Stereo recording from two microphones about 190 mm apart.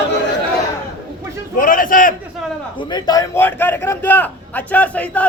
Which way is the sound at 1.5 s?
45° left (ahead or behind).